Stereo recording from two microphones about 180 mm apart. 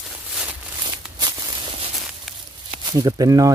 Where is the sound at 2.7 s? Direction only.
20° right (ahead or behind).